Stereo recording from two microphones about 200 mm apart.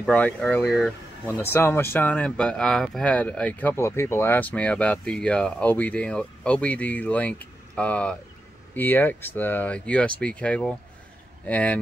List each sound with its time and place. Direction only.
0.0 s speech: 5° left (ahead or behind)